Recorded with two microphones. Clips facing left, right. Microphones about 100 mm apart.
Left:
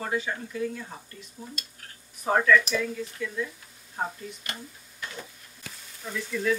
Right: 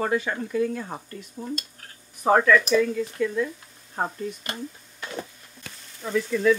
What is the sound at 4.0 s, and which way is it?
Speech, 90° right.